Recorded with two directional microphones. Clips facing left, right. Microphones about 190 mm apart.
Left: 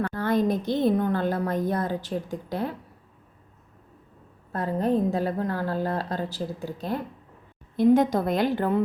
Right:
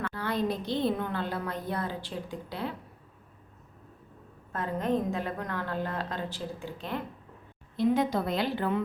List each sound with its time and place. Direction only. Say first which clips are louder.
0.1 s a woman's voice: left 5 dB; 45° left (ahead or behind)
4.5 s a woman's voice: left 5 dB; 35° left (ahead or behind)